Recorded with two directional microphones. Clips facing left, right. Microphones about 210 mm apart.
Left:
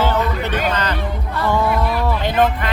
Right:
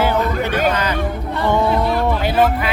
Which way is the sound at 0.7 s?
10° right (ahead or behind).